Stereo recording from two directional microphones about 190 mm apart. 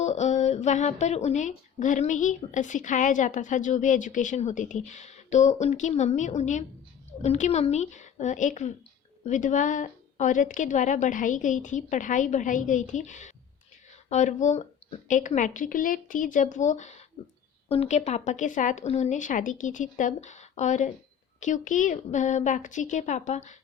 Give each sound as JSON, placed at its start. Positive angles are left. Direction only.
{"t": 0.0, "sound": "a woman's voice", "side_deg": 35}